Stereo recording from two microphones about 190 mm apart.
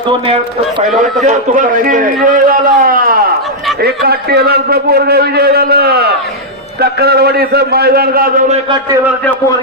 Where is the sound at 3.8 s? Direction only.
55° right (ahead or behind).